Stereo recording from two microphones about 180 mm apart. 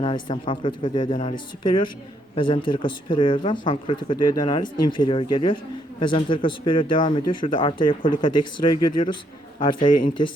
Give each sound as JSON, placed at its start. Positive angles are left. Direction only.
{"t": 0.0, "sound": "speech", "side_deg": 25}